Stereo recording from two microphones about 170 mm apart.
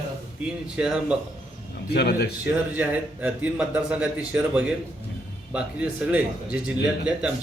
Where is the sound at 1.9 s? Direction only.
70° left (ahead or behind).